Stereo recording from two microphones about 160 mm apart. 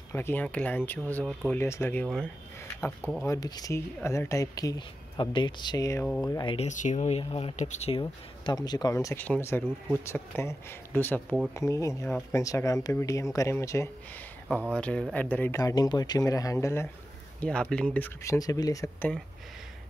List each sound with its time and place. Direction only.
0.1 s speech: 15° left (ahead or behind)
3.3 s speech: 25° left (ahead or behind)
6.5 s speech: 45° left (ahead or behind)
8.0 s speech: 25° left (ahead or behind)
11.2 s speech: 5° right (ahead or behind)
11.5 s speech: 20° left (ahead or behind)
14.7 s speech: 5° left (ahead or behind)
17.4 s speech: 5° left (ahead or behind); by 19.0 s 20° left (ahead or behind)